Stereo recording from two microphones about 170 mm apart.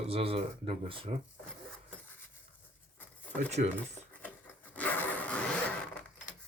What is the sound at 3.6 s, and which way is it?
Speech, 50° right (ahead or behind).